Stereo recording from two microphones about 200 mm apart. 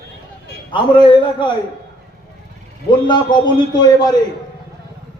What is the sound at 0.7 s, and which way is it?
Speech, 25° left (ahead or behind).